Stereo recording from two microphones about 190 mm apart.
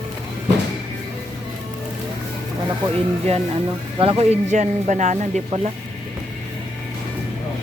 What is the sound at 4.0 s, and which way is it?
Speech, 30° right (ahead or behind).